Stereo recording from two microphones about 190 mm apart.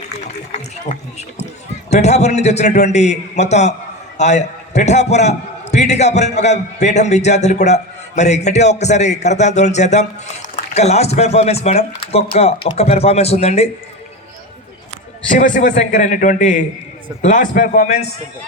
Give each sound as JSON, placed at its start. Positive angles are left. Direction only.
{"t": 0.9, "sound": "a man's voice", "side_deg": 40}
{"t": 15.3, "sound": "a man's voice", "side_deg": 45}